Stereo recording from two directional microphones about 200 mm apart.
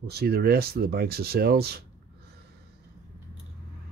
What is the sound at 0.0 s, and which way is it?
Speech, 55° right (ahead or behind).